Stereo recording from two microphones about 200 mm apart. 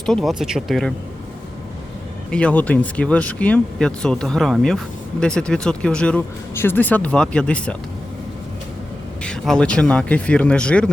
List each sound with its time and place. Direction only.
0.0 s speech: 5° left (ahead or behind)
2.3 s speech: 5° left (ahead or behind)
9.2 s speech: 5° left (ahead or behind)